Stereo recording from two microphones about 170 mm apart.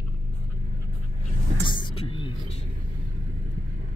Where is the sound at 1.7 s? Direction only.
30° left (ahead or behind).